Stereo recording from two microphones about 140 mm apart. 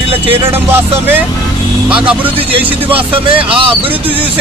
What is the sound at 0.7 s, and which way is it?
Speech, 15° right (ahead or behind).